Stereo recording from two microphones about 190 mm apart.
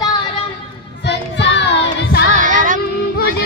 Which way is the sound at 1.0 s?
65° left (ahead or behind).